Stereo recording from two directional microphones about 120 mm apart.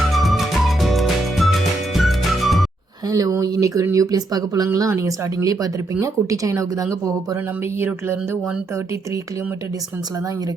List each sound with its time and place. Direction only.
0.1 s music: centre (ahead or behind)
3.1 s speech: 30° right (ahead or behind)